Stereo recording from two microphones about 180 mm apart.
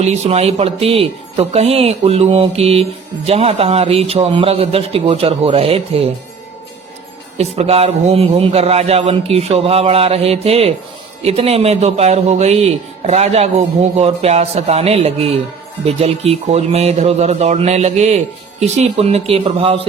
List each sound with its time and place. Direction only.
0.0 s speech: 35° right (ahead or behind)
7.3 s speech: 35° right (ahead or behind)